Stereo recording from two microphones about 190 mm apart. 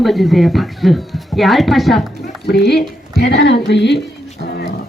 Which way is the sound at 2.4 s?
55° left (ahead or behind).